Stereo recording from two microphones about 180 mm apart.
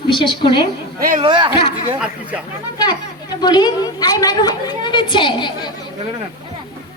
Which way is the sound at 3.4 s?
25° left (ahead or behind).